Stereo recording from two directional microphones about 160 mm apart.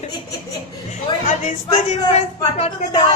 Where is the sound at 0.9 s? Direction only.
45° left (ahead or behind).